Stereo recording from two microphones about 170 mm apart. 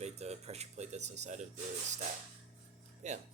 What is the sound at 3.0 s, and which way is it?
Speech, 45° right (ahead or behind).